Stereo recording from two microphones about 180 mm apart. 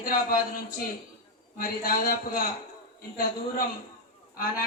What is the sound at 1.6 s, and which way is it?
Speech, 55° left (ahead or behind).